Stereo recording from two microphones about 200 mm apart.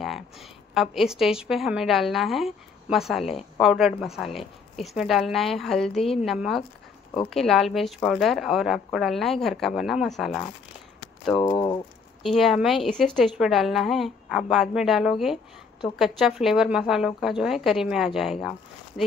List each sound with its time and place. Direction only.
0.0 s a woman's voice: centre (ahead or behind)
11.3 s speech: 25° left (ahead or behind)
12.2 s a woman's voice: centre (ahead or behind)